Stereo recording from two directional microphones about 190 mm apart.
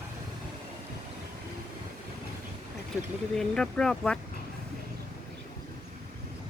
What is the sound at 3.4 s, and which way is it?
Speech, 5° left (ahead or behind).